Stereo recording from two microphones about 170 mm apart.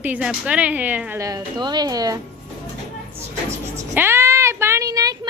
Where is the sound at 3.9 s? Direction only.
15° right (ahead or behind).